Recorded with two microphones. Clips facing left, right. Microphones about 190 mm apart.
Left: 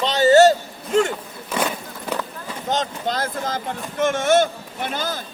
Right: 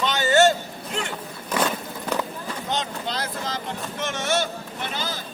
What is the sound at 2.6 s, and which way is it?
Speech, 45° left (ahead or behind).